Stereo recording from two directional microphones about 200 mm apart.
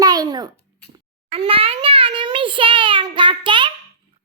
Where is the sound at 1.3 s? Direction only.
25° right (ahead or behind).